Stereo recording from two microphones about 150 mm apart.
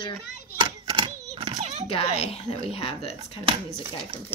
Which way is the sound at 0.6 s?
30° right (ahead or behind).